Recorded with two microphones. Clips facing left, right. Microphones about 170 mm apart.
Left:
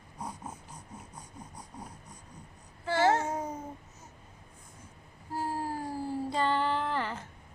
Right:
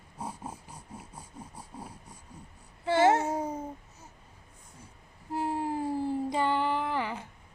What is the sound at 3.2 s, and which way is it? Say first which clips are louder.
Babbling: right 3 dB; 30° right (ahead or behind).